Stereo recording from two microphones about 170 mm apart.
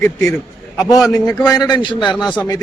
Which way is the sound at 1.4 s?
25° left (ahead or behind).